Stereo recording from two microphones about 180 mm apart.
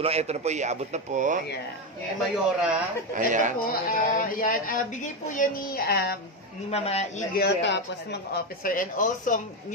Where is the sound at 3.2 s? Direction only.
45° right (ahead or behind).